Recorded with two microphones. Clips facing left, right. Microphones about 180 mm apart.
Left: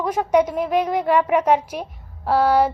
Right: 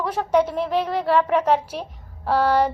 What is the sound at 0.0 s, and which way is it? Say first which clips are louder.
Speech: left 2 dB; 10° left (ahead or behind).